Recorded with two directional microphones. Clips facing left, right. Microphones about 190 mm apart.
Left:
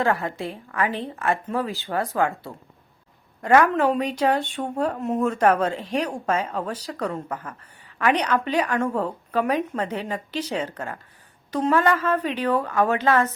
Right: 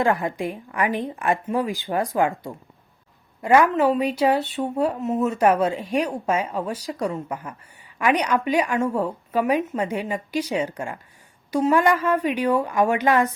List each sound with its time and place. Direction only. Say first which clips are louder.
0.0 s speech: right 2 dB; 15° right (ahead or behind)